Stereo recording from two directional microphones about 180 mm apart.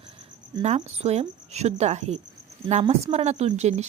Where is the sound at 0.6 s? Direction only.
35° right (ahead or behind).